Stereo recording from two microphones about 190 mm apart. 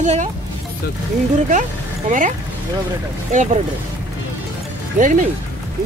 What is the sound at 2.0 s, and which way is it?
Speech, 40° right (ahead or behind).